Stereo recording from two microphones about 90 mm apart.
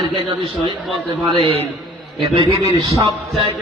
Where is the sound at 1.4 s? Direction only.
90° right.